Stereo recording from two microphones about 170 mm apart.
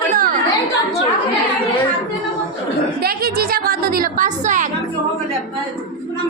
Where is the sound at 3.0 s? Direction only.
60° right (ahead or behind).